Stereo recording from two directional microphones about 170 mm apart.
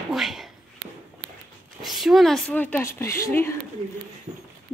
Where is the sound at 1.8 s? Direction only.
Centre (ahead or behind); by 3.5 s 15° left (ahead or behind).